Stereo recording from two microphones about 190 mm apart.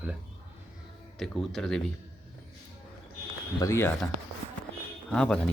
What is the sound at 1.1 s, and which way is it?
Speech, centre (ahead or behind).